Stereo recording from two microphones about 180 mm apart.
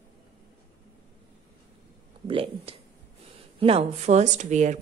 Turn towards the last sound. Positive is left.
turn(degrees=-40)  # may be behind; listen again after turning